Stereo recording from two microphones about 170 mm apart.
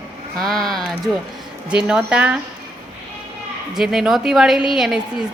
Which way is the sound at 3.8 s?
5° right (ahead or behind).